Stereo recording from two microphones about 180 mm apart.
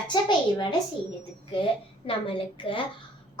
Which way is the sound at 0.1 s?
25° left (ahead or behind).